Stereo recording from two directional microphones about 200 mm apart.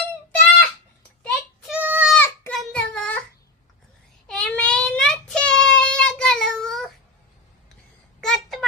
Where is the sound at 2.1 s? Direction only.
10° left (ahead or behind).